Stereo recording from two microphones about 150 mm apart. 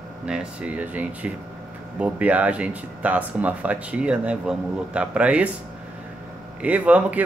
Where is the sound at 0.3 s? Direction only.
5° right (ahead or behind).